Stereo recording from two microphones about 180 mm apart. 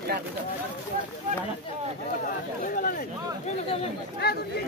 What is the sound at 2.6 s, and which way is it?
Speech, 50° left (ahead or behind).